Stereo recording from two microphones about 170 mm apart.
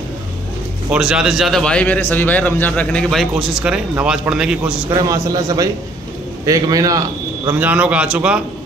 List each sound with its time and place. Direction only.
0.8 s a man's voice: 5° right (ahead or behind)
4.8 s a man's voice: 20° right (ahead or behind)
7.5 s a man's voice: 10° right (ahead or behind)